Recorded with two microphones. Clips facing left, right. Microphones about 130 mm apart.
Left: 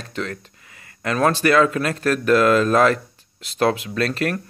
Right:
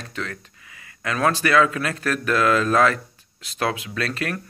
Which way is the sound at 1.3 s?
30° left (ahead or behind).